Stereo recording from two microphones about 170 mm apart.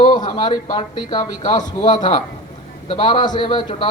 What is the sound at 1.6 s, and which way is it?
Speech, 45° left (ahead or behind).